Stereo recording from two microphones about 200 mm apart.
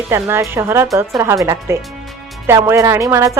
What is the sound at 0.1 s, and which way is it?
Speech, 10° right (ahead or behind).